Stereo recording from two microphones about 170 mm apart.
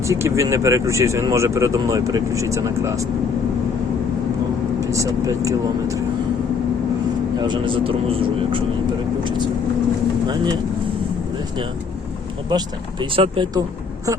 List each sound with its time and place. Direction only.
0.0 s speech: 15° right (ahead or behind)
4.8 s speech: 20° right (ahead or behind)
7.4 s speech: 30° right (ahead or behind)
12.5 s speech: 25° right (ahead or behind)